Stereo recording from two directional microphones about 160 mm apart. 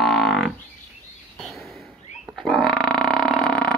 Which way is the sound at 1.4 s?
Centre (ahead or behind).